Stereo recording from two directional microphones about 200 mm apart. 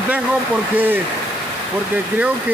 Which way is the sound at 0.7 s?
10° right (ahead or behind).